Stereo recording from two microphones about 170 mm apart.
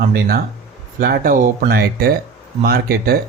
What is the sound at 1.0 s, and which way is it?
Speech, 60° right (ahead or behind).